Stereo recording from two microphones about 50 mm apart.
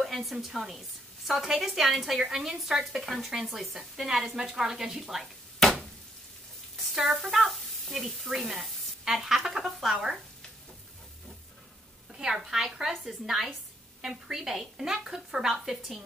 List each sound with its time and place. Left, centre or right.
0.0 s a woman's voice: centre
3.9 s a woman's voice: centre
5.2 s a sound: centre
6.9 s a woman's voice: centre
12.1 s a woman's voice: centre